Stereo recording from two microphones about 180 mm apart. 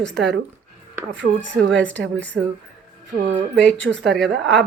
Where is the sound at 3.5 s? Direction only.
5° left (ahead or behind).